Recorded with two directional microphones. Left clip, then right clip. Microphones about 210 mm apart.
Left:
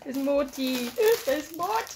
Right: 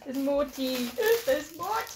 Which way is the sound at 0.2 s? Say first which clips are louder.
Left 2 dB; 45° left (ahead or behind).